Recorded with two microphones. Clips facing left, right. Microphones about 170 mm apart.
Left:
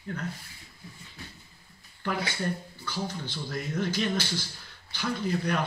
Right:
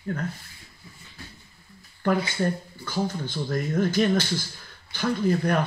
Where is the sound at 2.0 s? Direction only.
50° right (ahead or behind).